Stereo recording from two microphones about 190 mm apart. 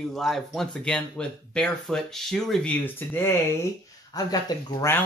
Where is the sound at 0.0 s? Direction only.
Centre (ahead or behind).